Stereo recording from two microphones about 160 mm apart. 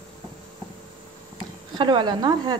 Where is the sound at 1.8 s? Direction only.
30° right (ahead or behind).